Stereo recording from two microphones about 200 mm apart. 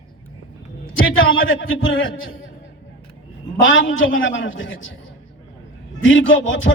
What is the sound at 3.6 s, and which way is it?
A man's voice, 75° left (ahead or behind).